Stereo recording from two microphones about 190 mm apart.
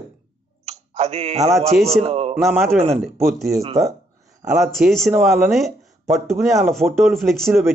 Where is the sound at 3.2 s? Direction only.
Centre (ahead or behind).